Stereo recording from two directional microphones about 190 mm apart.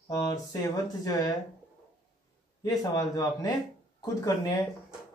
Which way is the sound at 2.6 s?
20° left (ahead or behind).